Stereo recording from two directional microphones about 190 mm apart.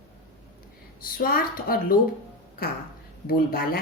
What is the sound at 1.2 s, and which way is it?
Speech, 50° left (ahead or behind).